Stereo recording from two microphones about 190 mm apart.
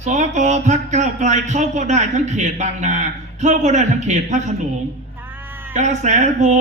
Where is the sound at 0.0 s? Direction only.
40° right (ahead or behind).